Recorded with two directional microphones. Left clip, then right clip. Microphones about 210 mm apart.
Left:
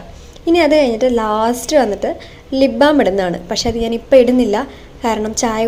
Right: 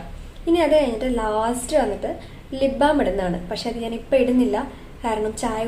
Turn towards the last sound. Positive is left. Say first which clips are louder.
# left 7 dB
turn(degrees=35)  # may be behind; listen again after turning